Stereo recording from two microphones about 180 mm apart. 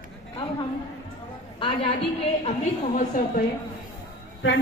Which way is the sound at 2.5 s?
45° left (ahead or behind).